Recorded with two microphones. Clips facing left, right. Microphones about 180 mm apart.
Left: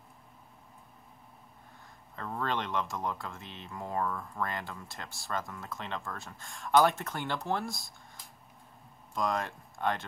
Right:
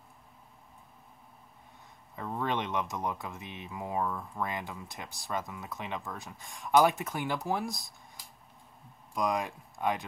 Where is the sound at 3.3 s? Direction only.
Centre (ahead or behind).